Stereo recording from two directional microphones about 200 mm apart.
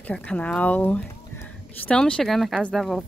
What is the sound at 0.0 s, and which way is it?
Speech, 5° left (ahead or behind).